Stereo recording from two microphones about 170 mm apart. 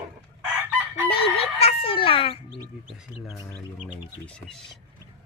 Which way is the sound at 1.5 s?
35° left (ahead or behind).